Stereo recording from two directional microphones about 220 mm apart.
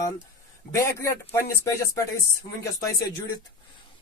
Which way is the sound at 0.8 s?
15° left (ahead or behind).